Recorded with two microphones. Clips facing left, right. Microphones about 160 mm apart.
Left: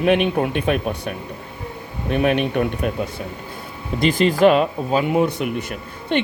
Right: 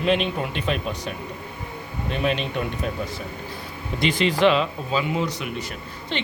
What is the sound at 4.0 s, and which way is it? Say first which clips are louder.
A woman's voice: left 4 dB; 45° left (ahead or behind).